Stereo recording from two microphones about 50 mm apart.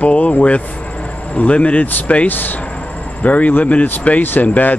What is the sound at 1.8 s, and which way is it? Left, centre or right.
Speech, left.